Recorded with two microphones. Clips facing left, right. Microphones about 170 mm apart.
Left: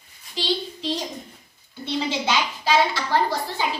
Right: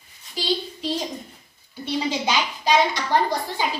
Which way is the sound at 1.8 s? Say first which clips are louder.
Right 1 dB; 15° right (ahead or behind).